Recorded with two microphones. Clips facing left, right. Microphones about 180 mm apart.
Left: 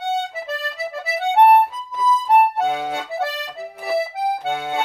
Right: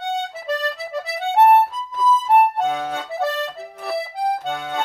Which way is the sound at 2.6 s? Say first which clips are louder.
Left 1 dB; 10° left (ahead or behind).